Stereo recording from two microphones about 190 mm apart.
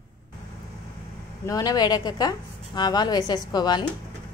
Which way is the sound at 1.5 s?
20° left (ahead or behind).